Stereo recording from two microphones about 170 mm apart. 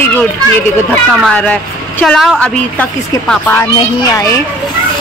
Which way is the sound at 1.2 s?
10° left (ahead or behind).